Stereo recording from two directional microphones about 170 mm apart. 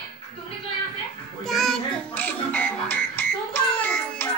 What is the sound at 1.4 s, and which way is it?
Music, centre (ahead or behind).